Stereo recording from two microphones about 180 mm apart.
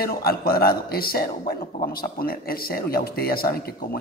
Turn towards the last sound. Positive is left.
turn(degrees=55)  # may be behind; listen again after turning